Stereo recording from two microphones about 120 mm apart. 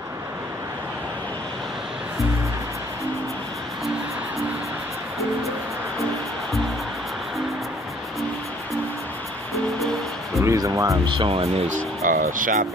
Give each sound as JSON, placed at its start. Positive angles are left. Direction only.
{"t": 10.4, "sound": "music", "side_deg": -25}
{"t": 11.1, "sound": "speech", "side_deg": -50}
{"t": 11.6, "sound": "speech", "side_deg": -90}